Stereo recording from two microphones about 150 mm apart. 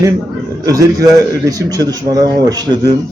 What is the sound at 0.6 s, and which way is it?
A man's voice, 25° right (ahead or behind).